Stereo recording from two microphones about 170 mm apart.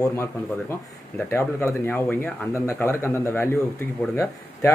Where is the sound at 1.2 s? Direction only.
15° left (ahead or behind).